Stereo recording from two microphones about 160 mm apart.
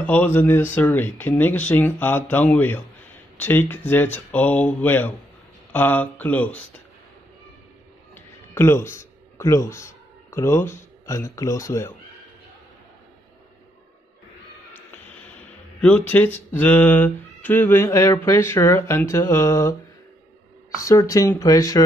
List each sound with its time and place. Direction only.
0.0 s speech: 10° left (ahead or behind)
8.1 s speech: 15° left (ahead or behind)
16.1 s speech: 10° left (ahead or behind)
20.7 s speech: 20° left (ahead or behind)